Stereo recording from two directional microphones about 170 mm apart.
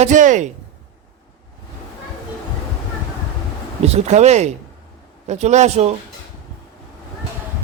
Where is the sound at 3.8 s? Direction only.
40° right (ahead or behind).